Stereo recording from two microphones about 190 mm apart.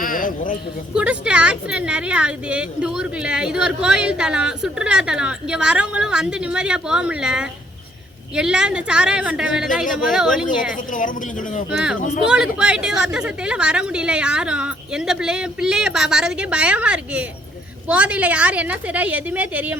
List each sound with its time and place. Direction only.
0.0 s a sound: 45° left (ahead or behind)
0.9 s speech: 5° right (ahead or behind)
10.7 s a woman's voice: 45° left (ahead or behind)
12.2 s a woman's voice: 5° right (ahead or behind)